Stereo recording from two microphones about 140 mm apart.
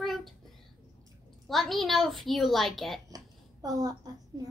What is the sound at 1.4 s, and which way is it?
A woman's voice, centre (ahead or behind).